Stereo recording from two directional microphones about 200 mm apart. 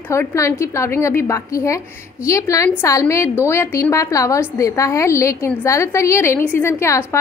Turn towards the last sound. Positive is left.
turn(degrees=15)  # may be behind; listen again after turning